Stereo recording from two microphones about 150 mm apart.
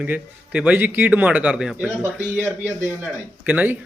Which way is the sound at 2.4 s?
15° right (ahead or behind).